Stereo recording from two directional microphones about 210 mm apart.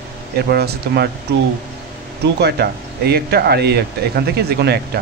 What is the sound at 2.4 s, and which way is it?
Speech, 50° right (ahead or behind).